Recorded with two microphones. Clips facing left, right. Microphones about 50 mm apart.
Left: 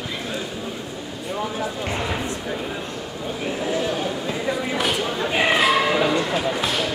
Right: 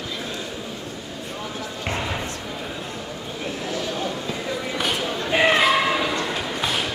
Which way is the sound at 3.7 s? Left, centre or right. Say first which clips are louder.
Left 3 dB; centre.